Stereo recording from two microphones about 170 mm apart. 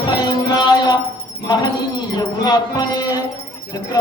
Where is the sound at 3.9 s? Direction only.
25° left (ahead or behind).